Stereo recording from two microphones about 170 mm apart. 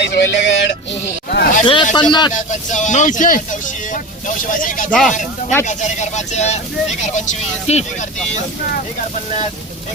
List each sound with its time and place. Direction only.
0.0 s music: 90° left
1.3 s speech: 70° left (ahead or behind)
1.6 s speech: 30° left (ahead or behind)
2.3 s speech: 45° left (ahead or behind)
4.9 s speech: centre (ahead or behind)
5.6 s speech: 45° left (ahead or behind)